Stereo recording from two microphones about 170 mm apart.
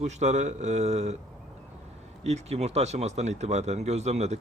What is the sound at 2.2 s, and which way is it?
Speech, 40° right (ahead or behind).